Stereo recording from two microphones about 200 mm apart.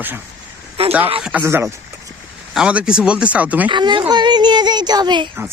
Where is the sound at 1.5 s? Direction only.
15° right (ahead or behind).